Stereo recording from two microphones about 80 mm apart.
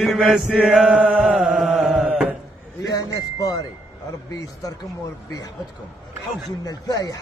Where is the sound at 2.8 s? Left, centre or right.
Left.